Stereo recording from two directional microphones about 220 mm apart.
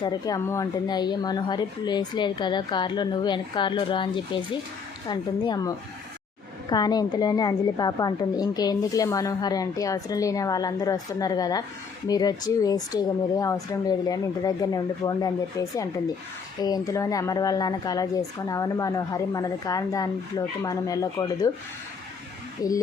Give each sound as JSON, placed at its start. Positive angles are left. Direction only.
{"t": 0.0, "sound": "a woman's voice", "side_deg": 15}
{"t": 22.6, "sound": "a woman's voice", "side_deg": 15}